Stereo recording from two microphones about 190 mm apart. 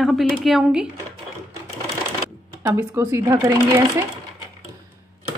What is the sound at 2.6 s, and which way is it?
Speech, 15° right (ahead or behind).